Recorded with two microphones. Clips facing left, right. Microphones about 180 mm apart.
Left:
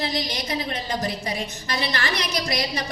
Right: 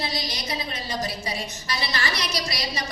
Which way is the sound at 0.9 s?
55° left (ahead or behind).